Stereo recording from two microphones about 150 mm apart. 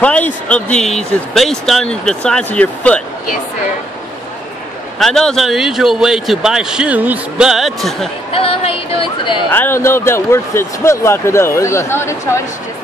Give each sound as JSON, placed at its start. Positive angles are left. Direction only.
{"t": 0.0, "sound": "speech", "side_deg": 10}
{"t": 4.9, "sound": "speech", "side_deg": 0}
{"t": 8.3, "sound": "speech", "side_deg": 40}
{"t": 9.5, "sound": "speech", "side_deg": 15}